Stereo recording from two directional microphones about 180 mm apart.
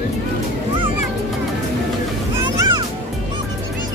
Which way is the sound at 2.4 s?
20° right (ahead or behind).